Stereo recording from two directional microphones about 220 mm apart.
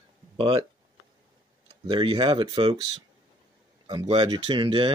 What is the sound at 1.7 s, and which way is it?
Speech, 25° right (ahead or behind).